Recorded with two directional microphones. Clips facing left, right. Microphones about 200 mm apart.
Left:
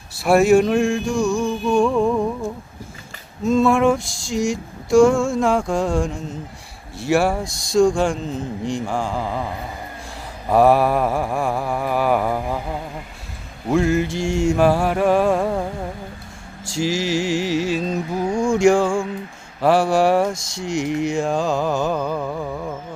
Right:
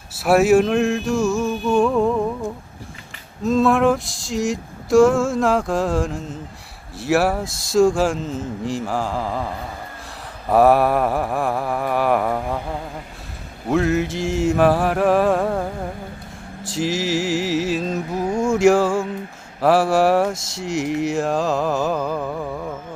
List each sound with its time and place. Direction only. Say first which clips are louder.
0.2 s speech: even; 5° right (ahead or behind)
3.4 s speech: even; centre (ahead or behind)
10.5 s speech: even; centre (ahead or behind)
13.7 s speech: left 1 dB; centre (ahead or behind)
16.6 s speech: left 1 dB; centre (ahead or behind)
18.3 s a sound: even; 20° right (ahead or behind)
18.5 s speech: right 1 dB; 5° right (ahead or behind)